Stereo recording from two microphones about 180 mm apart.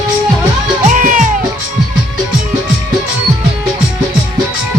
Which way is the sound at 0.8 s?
45° right (ahead or behind).